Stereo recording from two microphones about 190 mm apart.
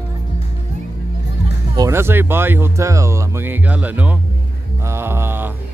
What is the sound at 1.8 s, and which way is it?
Speech, 15° right (ahead or behind).